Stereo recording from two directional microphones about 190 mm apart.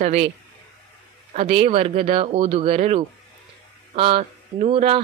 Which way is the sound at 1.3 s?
35° right (ahead or behind).